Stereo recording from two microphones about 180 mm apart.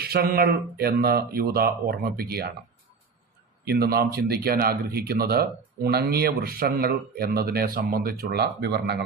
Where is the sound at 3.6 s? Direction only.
60° right (ahead or behind).